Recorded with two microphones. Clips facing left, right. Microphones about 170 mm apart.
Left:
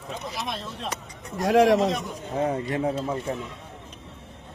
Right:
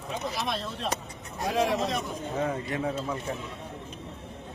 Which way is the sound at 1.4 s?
85° left.